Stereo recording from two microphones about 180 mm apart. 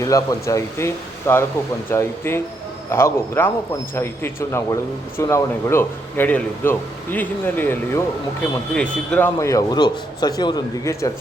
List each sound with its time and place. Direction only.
0.0 s speech: 20° left (ahead or behind)